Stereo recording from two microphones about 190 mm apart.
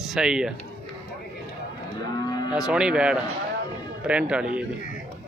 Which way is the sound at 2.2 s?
20° left (ahead or behind).